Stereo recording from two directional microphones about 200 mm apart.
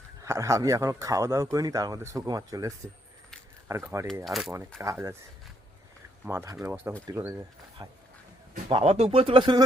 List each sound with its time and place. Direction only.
0.2 s speech: 15° right (ahead or behind)
4.0 s speech: centre (ahead or behind)
4.8 s speech: 15° right (ahead or behind)
6.2 s speech: 15° right (ahead or behind)